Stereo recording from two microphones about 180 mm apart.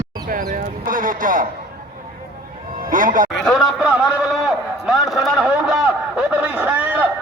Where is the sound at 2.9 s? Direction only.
50° right (ahead or behind).